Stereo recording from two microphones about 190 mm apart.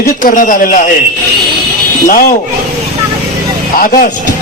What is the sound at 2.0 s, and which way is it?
Speech, 50° left (ahead or behind).